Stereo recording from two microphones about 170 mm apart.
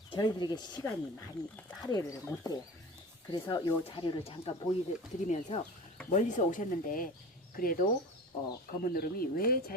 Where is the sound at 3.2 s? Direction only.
25° left (ahead or behind).